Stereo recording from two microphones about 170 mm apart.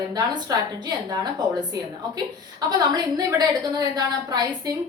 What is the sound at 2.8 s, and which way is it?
A woman's voice, 25° right (ahead or behind).